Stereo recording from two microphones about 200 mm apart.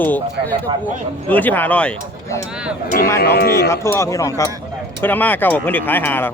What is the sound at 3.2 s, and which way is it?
Speech, 55° left (ahead or behind).